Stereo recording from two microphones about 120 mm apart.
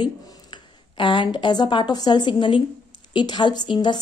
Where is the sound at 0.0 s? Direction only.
40° left (ahead or behind).